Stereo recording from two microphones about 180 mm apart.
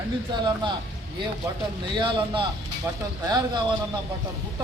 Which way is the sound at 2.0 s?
25° right (ahead or behind).